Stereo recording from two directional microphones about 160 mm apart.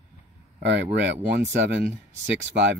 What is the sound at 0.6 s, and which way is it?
Speech, 90° right.